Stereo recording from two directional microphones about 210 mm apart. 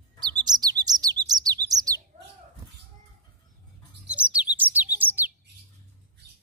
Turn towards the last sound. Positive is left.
turn(degrees=-10)  # may be behind; listen again after turning